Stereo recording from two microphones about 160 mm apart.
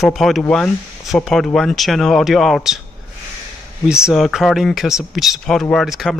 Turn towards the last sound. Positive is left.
turn(degrees=0)  # may be behind; listen again after turning